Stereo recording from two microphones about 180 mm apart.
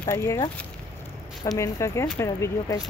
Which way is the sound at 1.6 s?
15° left (ahead or behind).